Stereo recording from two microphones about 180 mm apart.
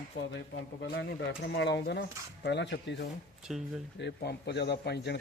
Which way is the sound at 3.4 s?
5° right (ahead or behind).